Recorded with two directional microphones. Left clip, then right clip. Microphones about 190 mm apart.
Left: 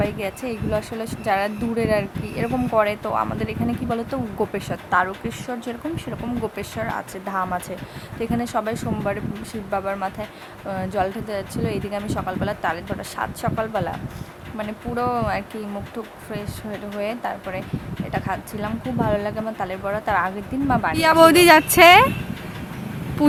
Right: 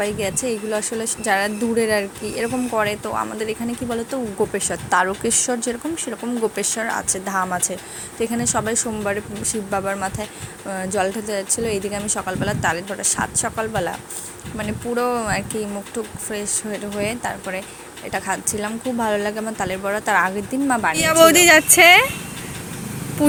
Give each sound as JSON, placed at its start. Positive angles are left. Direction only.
{"t": 0.0, "sound": "a woman's voice", "side_deg": -10}
{"t": 4.7, "sound": "a woman's voice", "side_deg": -20}
{"t": 17.0, "sound": "a woman's voice", "side_deg": -10}
{"t": 20.9, "sound": "speech", "side_deg": 5}